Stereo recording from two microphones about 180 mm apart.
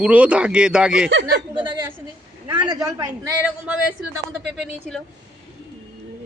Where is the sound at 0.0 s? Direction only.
5° right (ahead or behind).